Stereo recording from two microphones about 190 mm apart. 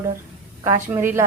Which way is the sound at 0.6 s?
10° right (ahead or behind).